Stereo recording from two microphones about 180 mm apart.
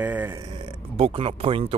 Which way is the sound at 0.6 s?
30° right (ahead or behind).